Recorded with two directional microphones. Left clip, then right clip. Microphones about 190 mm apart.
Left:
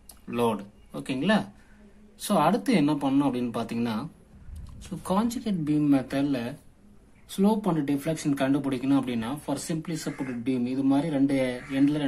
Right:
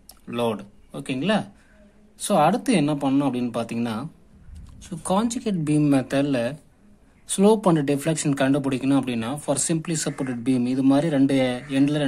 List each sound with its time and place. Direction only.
0.3 s speech: 20° right (ahead or behind)